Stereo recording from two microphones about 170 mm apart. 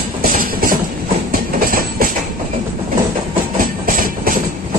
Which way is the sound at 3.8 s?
55° right (ahead or behind).